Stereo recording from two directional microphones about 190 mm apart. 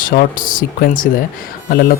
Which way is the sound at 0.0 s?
50° left (ahead or behind).